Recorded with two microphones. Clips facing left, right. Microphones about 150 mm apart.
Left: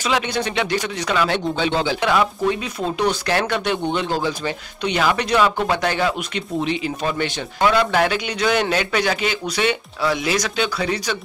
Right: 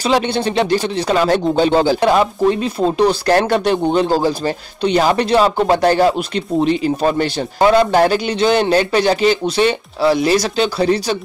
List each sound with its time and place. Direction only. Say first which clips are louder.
0.0 s speech: right 6 dB; 35° right (ahead or behind)